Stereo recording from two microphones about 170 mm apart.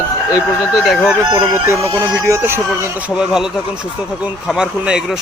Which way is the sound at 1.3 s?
15° right (ahead or behind).